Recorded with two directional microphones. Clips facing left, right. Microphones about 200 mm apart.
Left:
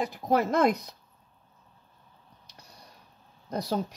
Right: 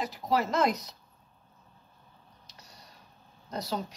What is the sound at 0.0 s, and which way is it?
Speech, 55° left (ahead or behind).